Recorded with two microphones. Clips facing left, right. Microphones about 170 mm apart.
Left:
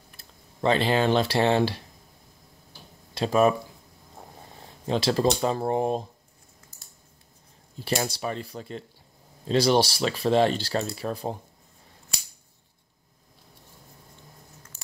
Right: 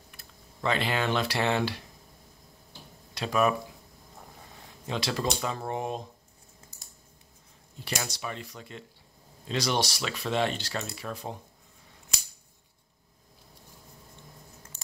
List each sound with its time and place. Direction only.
0.2 s speech: 30° left (ahead or behind)
3.2 s speech: 30° left (ahead or behind)
4.8 s speech: 35° left (ahead or behind)
7.8 s speech: 35° left (ahead or behind)